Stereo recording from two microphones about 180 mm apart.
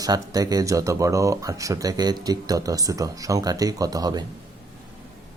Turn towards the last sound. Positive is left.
turn(degrees=-20)  # may be behind; listen again after turning